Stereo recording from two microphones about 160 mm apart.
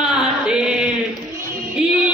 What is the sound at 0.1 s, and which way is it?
Chant, 5° right (ahead or behind).